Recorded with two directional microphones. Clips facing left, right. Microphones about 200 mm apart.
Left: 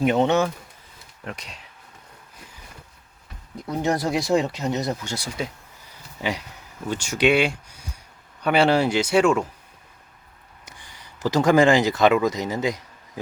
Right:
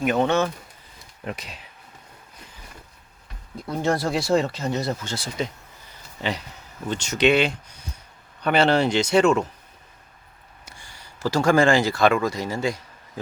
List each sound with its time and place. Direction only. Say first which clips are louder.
0.0 s speech: left 2 dB; 25° left (ahead or behind)
1.2 s speech: right 3 dB; 5° right (ahead or behind)
3.6 s speech: even; 15° left (ahead or behind)
10.7 s speech: even; 20° left (ahead or behind)